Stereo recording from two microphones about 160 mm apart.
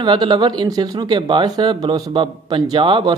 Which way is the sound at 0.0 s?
30° right (ahead or behind).